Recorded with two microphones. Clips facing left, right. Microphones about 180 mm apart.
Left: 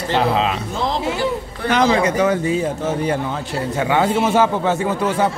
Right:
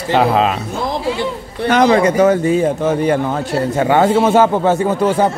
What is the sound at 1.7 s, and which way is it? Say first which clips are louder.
Speech: right 4 dB; 45° right (ahead or behind).